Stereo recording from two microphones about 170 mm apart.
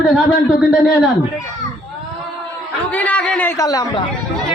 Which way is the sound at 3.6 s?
20° left (ahead or behind).